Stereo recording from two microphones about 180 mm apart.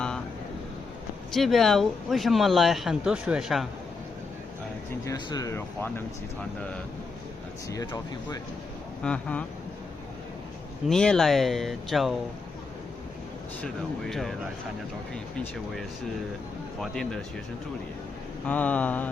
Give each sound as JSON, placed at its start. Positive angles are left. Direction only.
{"t": 1.3, "sound": "speech", "side_deg": 0}
{"t": 5.0, "sound": "speech", "side_deg": 20}
{"t": 9.0, "sound": "speech", "side_deg": 5}
{"t": 10.8, "sound": "speech", "side_deg": 5}
{"t": 13.6, "sound": "speech", "side_deg": 0}
{"t": 16.8, "sound": "speech", "side_deg": 0}
{"t": 18.4, "sound": "speech", "side_deg": 10}